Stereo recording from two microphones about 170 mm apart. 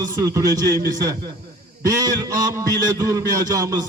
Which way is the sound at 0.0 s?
20° right (ahead or behind).